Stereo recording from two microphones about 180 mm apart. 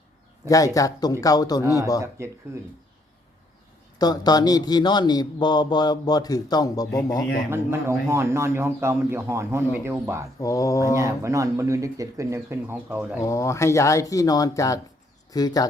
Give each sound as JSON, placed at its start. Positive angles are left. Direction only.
{"t": 0.4, "sound": "a man's voice", "side_deg": 20}
{"t": 2.0, "sound": "speech", "side_deg": -15}
{"t": 3.9, "sound": "a man's voice", "side_deg": 20}
{"t": 7.5, "sound": "speech", "side_deg": -15}
{"t": 10.4, "sound": "a man's voice", "side_deg": 20}
{"t": 10.9, "sound": "speech", "side_deg": -15}
{"t": 13.2, "sound": "a man's voice", "side_deg": 15}